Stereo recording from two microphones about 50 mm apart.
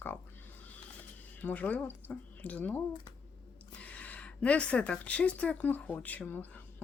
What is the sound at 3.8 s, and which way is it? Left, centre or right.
Speech, left.